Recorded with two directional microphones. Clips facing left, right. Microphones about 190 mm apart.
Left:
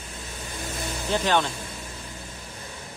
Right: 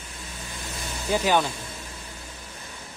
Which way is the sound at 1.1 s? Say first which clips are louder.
Right 1 dB; 10° right (ahead or behind).